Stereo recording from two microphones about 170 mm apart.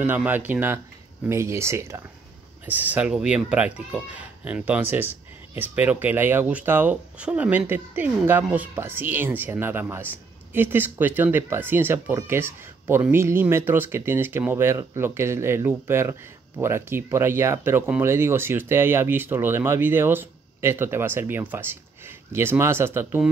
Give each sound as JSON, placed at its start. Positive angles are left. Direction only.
{"t": 0.0, "sound": "speech", "side_deg": -10}